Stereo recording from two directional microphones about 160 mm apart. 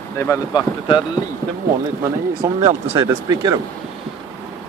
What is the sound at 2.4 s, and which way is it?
Speech, 15° right (ahead or behind).